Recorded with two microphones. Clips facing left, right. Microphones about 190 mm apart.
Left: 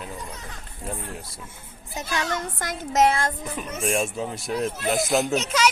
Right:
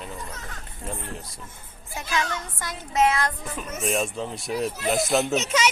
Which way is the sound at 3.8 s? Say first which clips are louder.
Left 1 dB; 10° left (ahead or behind).